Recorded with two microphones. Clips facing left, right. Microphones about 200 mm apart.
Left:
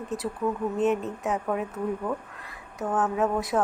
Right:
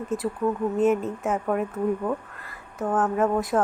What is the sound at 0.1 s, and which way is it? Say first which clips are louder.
Speech: right 4 dB; 40° left (ahead or behind).